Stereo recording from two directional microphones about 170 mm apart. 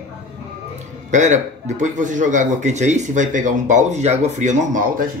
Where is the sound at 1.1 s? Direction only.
45° right (ahead or behind).